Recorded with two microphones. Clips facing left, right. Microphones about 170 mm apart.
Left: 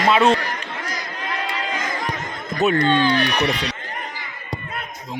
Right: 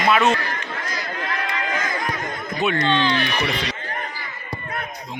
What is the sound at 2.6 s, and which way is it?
Speech, 45° left (ahead or behind).